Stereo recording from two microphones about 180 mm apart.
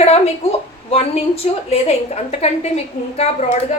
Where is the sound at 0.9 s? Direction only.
35° left (ahead or behind).